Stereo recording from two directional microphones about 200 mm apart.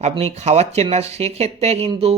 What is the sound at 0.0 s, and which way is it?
A man's voice, 30° right (ahead or behind).